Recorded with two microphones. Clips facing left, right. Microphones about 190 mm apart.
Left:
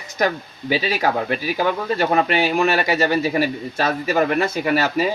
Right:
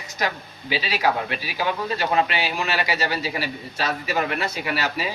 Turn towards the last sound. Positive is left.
turn(degrees=45)  # may be behind; listen again after turning